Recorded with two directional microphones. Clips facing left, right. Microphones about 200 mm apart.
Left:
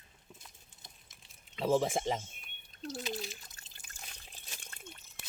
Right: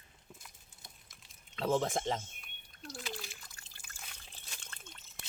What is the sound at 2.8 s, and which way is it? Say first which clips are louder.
Water: left 6 dB; 20° left (ahead or behind).